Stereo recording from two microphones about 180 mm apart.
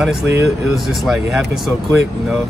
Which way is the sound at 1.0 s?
Centre (ahead or behind).